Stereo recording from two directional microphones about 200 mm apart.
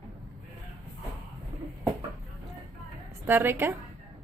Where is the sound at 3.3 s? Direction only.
10° right (ahead or behind).